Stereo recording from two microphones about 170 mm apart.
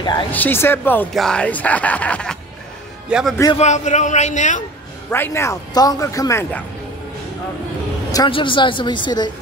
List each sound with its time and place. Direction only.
0.0 s speech: 25° left (ahead or behind)
0.3 s speech: 10° left (ahead or behind)
3.1 s a man's voice: 5° right (ahead or behind)
3.5 s a man's voice: 45° left (ahead or behind)
5.1 s speech: 15° left (ahead or behind)
8.1 s speech: 25° left (ahead or behind)